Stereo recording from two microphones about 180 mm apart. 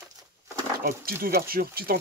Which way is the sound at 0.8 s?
55° right (ahead or behind).